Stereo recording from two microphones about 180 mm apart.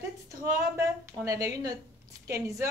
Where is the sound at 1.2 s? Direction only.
20° right (ahead or behind).